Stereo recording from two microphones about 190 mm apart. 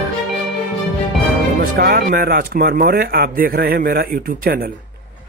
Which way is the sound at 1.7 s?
55° right (ahead or behind).